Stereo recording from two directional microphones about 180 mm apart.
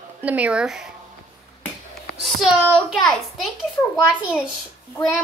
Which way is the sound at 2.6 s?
5° left (ahead or behind).